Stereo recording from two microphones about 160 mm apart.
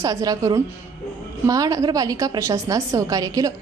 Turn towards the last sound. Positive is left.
turn(degrees=-20)  # may be behind; listen again after turning